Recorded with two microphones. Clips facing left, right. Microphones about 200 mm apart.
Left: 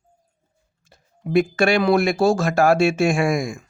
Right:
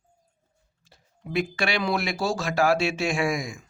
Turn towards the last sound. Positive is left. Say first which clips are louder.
# left 6 dB
turn(degrees=50)  # may be behind; listen again after turning